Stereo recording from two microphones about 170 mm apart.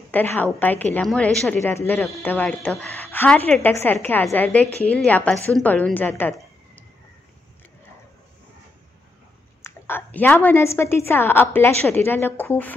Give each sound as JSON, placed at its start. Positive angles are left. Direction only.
{"t": 0.1, "sound": "a woman's voice", "side_deg": 10}
{"t": 9.6, "sound": "a woman's voice", "side_deg": 15}